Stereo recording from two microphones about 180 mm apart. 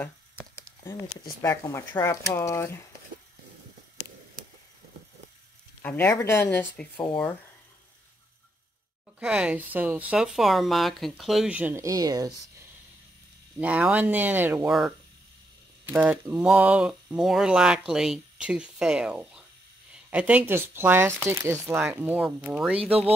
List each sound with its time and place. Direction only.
1.4 s speech: 15° left (ahead or behind)
5.8 s speech: 10° left (ahead or behind)
9.2 s speech: 5° right (ahead or behind)
13.6 s speech: 10° right (ahead or behind)
15.9 s speech: 10° right (ahead or behind)
22.8 s speech: 35° right (ahead or behind)